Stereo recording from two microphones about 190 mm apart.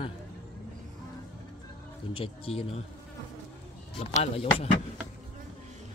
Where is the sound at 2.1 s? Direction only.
30° left (ahead or behind).